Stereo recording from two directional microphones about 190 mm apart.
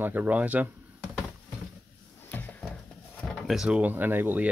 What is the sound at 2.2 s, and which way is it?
Drawer open or close, 10° left (ahead or behind).